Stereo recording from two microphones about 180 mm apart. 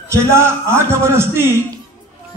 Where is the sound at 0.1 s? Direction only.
15° right (ahead or behind).